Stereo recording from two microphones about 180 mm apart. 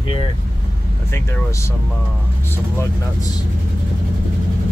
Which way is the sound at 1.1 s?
15° left (ahead or behind).